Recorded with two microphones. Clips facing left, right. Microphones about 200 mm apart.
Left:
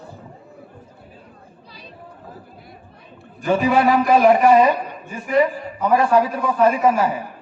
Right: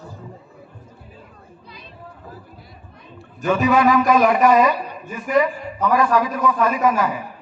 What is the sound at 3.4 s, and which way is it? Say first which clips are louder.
Speech: even; 30° left (ahead or behind).